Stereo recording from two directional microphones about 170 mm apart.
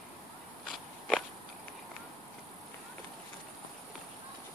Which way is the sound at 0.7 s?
5° left (ahead or behind).